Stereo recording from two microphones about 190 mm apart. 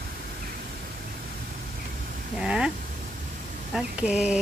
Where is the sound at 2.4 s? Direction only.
5° right (ahead or behind).